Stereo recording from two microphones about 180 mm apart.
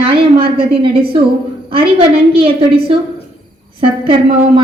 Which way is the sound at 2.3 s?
30° right (ahead or behind).